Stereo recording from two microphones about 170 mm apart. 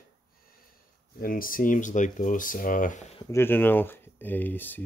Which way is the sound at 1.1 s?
55° left (ahead or behind).